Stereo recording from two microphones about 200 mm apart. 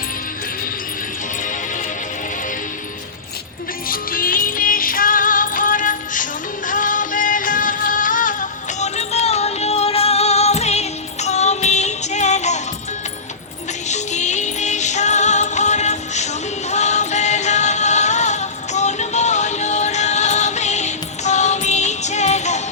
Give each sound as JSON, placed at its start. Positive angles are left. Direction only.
{"t": 1.4, "sound": "music", "side_deg": 40}
{"t": 3.8, "sound": "music", "side_deg": 45}
{"t": 13.8, "sound": "music", "side_deg": 35}